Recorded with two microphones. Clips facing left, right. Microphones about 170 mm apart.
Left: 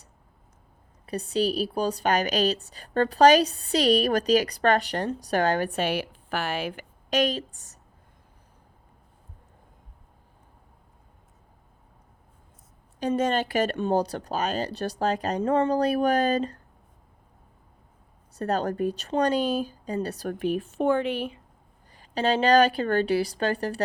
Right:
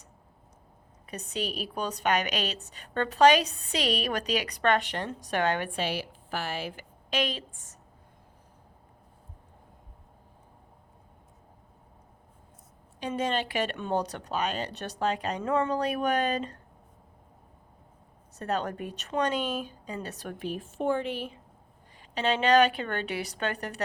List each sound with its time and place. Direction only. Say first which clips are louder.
1.0 s a woman's voice: left 9 dB; 35° left (ahead or behind); by 6.8 s 65° left (ahead or behind)
7.1 s a woman's voice: left 6 dB; 45° left (ahead or behind)
13.0 s a woman's voice: left 5 dB; 45° left (ahead or behind)
18.3 s a woman's voice: left 5 dB; 35° left (ahead or behind)
20.4 s speech: left 6 dB; 65° left (ahead or behind)
21.9 s a woman's voice: left 4 dB; 40° left (ahead or behind)